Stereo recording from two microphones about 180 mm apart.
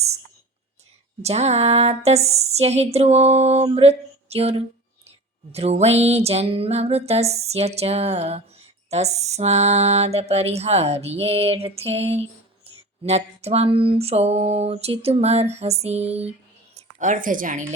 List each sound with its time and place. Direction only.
1.2 s mantra: 35° right (ahead or behind)
16.7 s a woman's voice: 45° right (ahead or behind)